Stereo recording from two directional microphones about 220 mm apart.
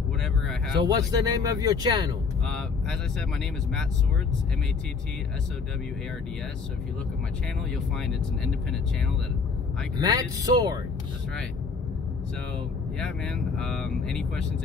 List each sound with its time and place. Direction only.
0.8 s speech: 15° right (ahead or behind)
2.4 s speech: 5° left (ahead or behind)
7.7 s speech: centre (ahead or behind)
9.9 s speech: 15° right (ahead or behind)
13.0 s speech: 5° left (ahead or behind)